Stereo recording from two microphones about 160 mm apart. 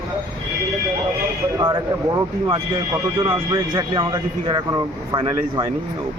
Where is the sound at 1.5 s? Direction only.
25° right (ahead or behind).